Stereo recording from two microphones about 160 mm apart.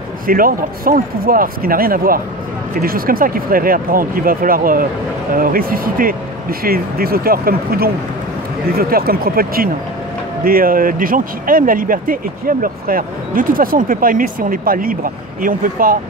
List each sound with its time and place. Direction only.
0.3 s speech: 60° right (ahead or behind)